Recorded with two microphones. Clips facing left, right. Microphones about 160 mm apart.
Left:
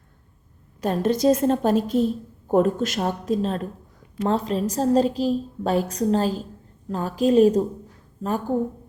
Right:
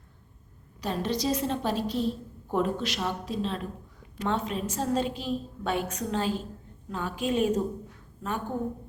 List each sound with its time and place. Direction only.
0.8 s a woman's voice: 50° left (ahead or behind)